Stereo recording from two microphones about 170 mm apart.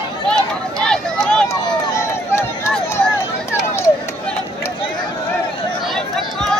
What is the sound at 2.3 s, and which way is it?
Run, 15° left (ahead or behind).